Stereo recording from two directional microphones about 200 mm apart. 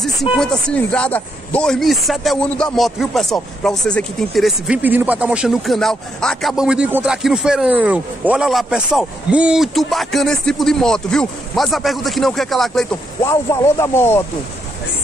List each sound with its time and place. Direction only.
0.0 s speech: centre (ahead or behind)
13.2 s speech: 15° left (ahead or behind)